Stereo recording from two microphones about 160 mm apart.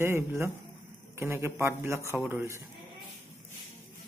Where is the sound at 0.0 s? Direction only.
15° right (ahead or behind).